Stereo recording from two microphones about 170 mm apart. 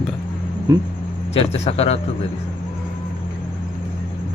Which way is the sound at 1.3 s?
35° left (ahead or behind).